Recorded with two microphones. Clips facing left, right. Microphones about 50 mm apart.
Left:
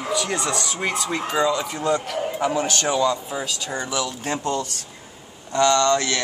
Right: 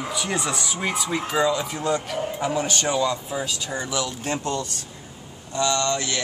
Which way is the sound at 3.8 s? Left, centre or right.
Left.